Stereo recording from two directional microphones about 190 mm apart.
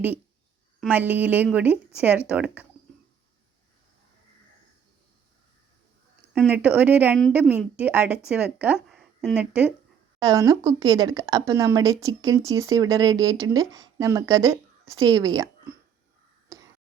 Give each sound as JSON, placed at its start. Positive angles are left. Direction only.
{"t": 0.8, "sound": "speech", "side_deg": -10}
{"t": 6.5, "sound": "speech", "side_deg": -10}
{"t": 10.2, "sound": "speech", "side_deg": -20}
{"t": 16.5, "sound": "a sound", "side_deg": -15}